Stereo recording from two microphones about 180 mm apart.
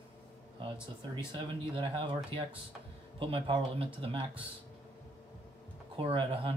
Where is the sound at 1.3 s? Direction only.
30° right (ahead or behind).